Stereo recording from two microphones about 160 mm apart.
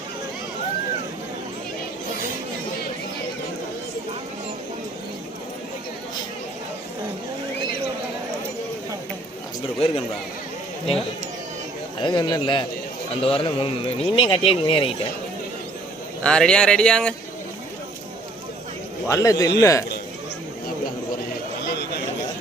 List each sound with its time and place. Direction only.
9.8 s speech: 40° left (ahead or behind)
11.9 s speech: 30° left (ahead or behind)
16.2 s speech: 5° left (ahead or behind)
19.0 s speech: 20° left (ahead or behind)
21.7 s a sound: 90° left